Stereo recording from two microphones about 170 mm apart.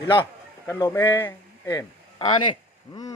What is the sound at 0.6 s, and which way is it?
A man's voice, 15° left (ahead or behind).